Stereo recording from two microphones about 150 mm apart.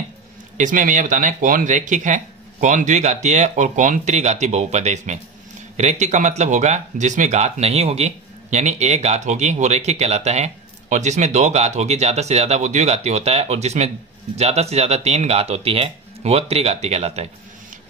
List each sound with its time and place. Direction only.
0.6 s speech: 60° right (ahead or behind)